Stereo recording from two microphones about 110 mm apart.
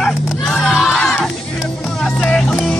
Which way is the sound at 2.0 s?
5° left (ahead or behind).